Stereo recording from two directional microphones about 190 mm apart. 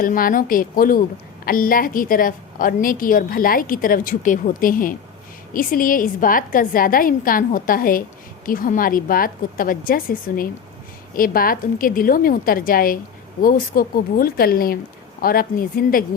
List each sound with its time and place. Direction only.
0.0 s a woman's voice: 45° left (ahead or behind)